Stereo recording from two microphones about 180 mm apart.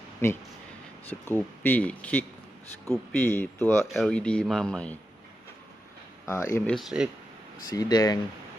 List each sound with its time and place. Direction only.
0.2 s speech: 15° left (ahead or behind)
6.2 s speech: 15° left (ahead or behind)
6.7 s speech: centre (ahead or behind)
7.7 s speech: 20° left (ahead or behind)